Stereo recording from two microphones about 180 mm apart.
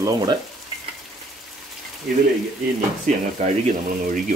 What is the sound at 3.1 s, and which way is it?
Speech, 45° right (ahead or behind).